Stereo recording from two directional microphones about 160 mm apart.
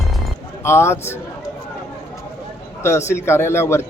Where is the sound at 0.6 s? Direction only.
15° left (ahead or behind).